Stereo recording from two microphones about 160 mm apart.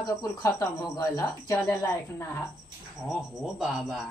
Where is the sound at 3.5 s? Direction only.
Centre (ahead or behind).